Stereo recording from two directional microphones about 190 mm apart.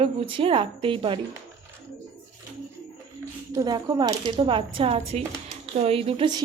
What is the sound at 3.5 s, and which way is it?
A woman's voice, 20° right (ahead or behind).